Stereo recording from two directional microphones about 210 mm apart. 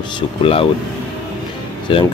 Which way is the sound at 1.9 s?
25° left (ahead or behind).